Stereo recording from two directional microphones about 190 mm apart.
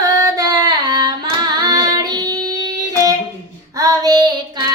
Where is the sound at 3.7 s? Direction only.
20° right (ahead or behind).